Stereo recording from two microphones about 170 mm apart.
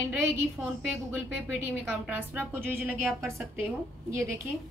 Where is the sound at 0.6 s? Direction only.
Centre (ahead or behind).